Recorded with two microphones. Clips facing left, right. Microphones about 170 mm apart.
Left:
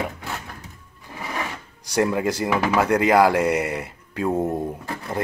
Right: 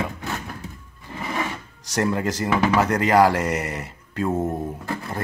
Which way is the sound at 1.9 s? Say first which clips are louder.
Left 2 dB; 10° left (ahead or behind).